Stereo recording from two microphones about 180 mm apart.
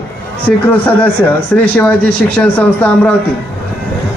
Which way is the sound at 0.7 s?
10° left (ahead or behind).